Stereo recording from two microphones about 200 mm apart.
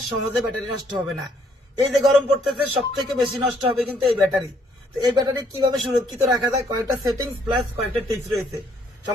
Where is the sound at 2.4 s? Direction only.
Centre (ahead or behind).